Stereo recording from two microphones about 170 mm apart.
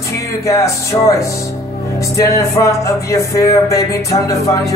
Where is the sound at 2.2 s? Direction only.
20° left (ahead or behind).